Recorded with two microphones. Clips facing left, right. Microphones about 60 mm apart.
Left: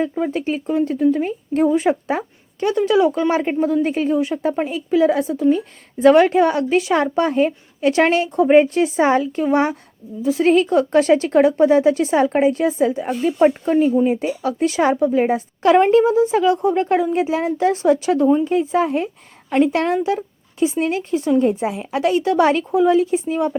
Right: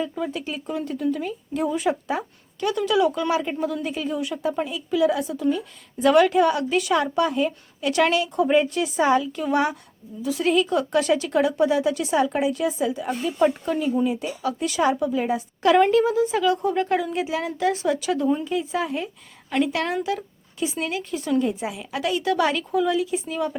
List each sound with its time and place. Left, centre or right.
0.1 s speech: left